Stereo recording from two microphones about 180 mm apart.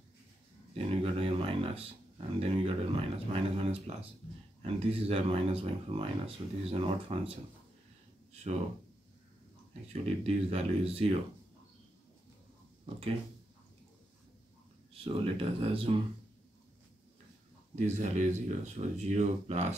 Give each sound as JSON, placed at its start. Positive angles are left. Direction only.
{"t": 0.7, "sound": "a sound", "side_deg": -35}
{"t": 4.6, "sound": "speech", "side_deg": -35}
{"t": 10.0, "sound": "speech", "side_deg": -35}
{"t": 15.1, "sound": "speech", "side_deg": -30}
{"t": 17.7, "sound": "speech", "side_deg": -40}